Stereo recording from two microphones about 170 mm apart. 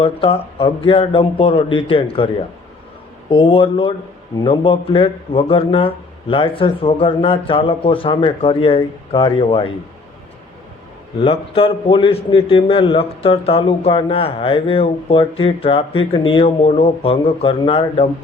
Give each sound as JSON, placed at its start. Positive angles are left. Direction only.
{"t": 0.0, "sound": "a man's voice", "side_deg": 30}
{"t": 11.2, "sound": "a man's voice", "side_deg": 35}